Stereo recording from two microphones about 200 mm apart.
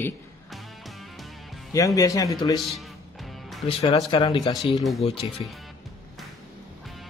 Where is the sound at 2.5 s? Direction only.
Centre (ahead or behind).